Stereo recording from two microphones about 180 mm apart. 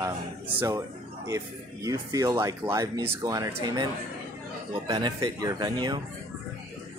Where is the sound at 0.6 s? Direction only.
15° right (ahead or behind).